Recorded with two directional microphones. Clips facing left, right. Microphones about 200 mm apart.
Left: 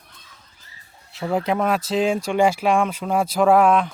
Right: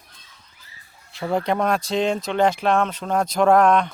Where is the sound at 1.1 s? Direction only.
Centre (ahead or behind).